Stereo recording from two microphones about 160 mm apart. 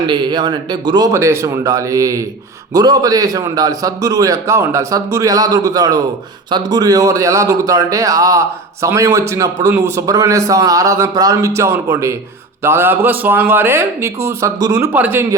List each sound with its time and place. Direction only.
0.1 s a man's voice: 25° right (ahead or behind)